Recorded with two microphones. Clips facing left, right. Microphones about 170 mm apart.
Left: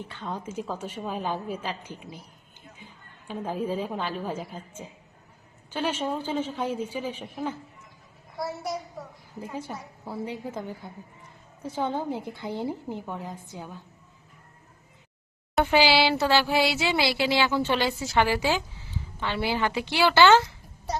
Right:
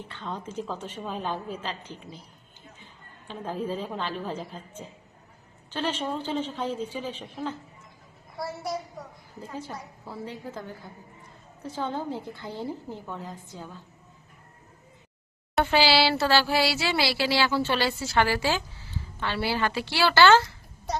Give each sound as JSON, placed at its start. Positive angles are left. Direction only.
{"t": 0.1, "sound": "speech", "side_deg": 10}
{"t": 3.2, "sound": "speech", "side_deg": 10}
{"t": 9.4, "sound": "speech", "side_deg": 15}
{"t": 15.6, "sound": "a woman's voice", "side_deg": 15}